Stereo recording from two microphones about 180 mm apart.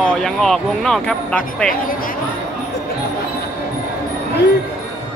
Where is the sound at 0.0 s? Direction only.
5° left (ahead or behind).